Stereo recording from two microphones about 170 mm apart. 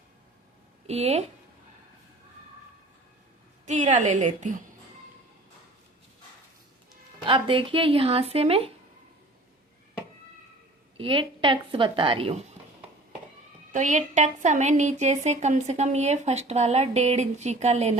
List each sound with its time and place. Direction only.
0.9 s a woman's voice: 40° right (ahead or behind)
3.7 s a woman's voice: 45° right (ahead or behind)
7.3 s a woman's voice: 30° right (ahead or behind)
10.9 s a woman's voice: 30° right (ahead or behind)
13.7 s a woman's voice: 45° right (ahead or behind)